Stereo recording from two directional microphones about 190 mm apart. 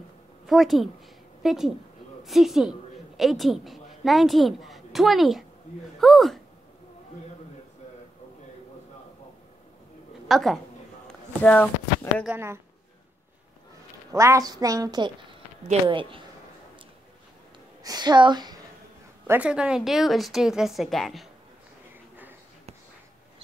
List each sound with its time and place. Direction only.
0.5 s a woman's voice: centre (ahead or behind)
10.2 s a woman's voice: centre (ahead or behind)
12.3 s a woman's voice: 10° right (ahead or behind)
14.1 s a woman's voice: 15° right (ahead or behind)
17.8 s a woman's voice: 20° right (ahead or behind)
19.2 s speech: 10° right (ahead or behind)